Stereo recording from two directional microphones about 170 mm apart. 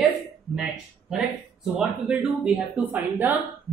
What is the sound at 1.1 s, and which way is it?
Speech, 5° right (ahead or behind).